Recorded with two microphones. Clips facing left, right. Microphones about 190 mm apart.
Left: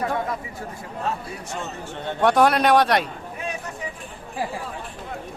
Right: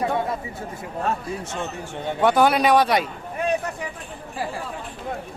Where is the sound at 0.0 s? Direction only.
25° right (ahead or behind).